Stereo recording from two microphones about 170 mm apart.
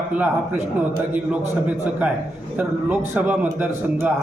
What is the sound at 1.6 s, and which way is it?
A man's voice, 10° right (ahead or behind).